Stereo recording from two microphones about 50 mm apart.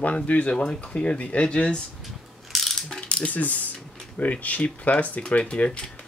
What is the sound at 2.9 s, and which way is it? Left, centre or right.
Mechanisms, left.